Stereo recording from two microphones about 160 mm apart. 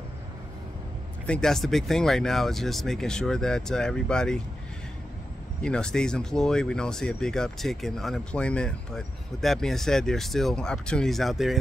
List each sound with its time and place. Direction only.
1.2 s speech: 5° left (ahead or behind)
5.6 s speech: 5° left (ahead or behind)